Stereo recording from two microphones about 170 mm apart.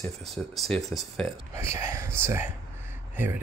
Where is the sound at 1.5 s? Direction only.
15° right (ahead or behind).